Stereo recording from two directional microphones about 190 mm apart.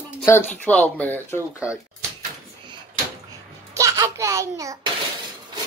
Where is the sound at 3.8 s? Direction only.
15° right (ahead or behind).